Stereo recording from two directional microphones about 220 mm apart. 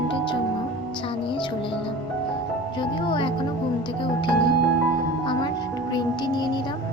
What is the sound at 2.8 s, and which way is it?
Speech, 20° left (ahead or behind).